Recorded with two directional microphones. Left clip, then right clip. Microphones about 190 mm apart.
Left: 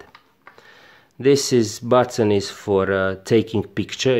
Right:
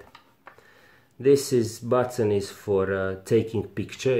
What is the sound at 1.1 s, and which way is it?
Speech, 40° left (ahead or behind).